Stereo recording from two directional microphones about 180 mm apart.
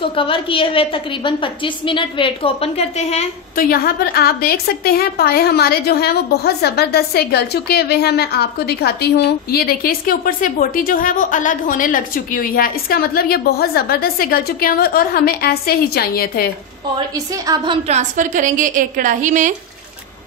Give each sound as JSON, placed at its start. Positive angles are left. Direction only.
{"t": 0.1, "sound": "a woman's voice", "side_deg": 30}
{"t": 3.6, "sound": "a woman's voice", "side_deg": 55}
{"t": 17.3, "sound": "a woman's voice", "side_deg": -20}
{"t": 17.8, "sound": "a woman's voice", "side_deg": -40}